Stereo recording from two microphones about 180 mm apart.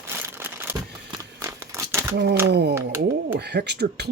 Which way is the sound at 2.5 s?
70° right (ahead or behind).